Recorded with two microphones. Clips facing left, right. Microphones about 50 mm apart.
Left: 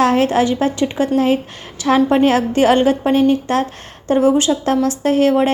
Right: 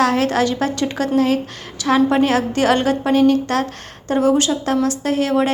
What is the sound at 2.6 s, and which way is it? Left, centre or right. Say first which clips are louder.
A woman's voice: left 4 dB; left.